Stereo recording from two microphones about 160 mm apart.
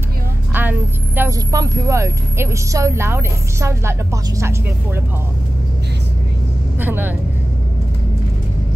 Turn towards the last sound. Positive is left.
turn(degrees=-10)  # may be behind; listen again after turning